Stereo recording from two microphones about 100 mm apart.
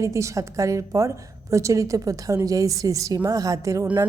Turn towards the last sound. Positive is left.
turn(degrees=-30)  # may be behind; listen again after turning